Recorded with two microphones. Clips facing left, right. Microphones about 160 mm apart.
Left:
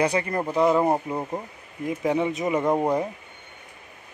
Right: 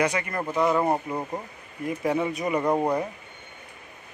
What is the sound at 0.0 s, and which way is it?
Speech, 30° left (ahead or behind).